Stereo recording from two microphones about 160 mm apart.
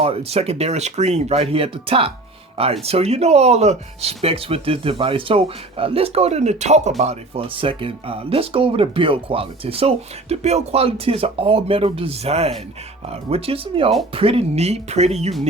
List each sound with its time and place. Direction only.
0.0 s speech: 40° right (ahead or behind)